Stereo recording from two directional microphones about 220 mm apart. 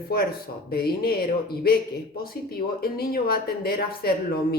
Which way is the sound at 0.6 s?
45° left (ahead or behind).